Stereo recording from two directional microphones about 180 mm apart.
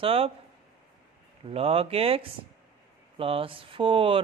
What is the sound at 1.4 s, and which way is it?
A man's voice, 35° right (ahead or behind).